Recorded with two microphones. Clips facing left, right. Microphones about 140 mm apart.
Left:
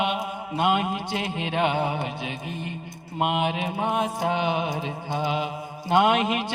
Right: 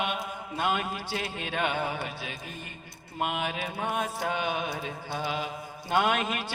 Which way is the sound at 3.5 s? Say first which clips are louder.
Left 6 dB; 25° left (ahead or behind).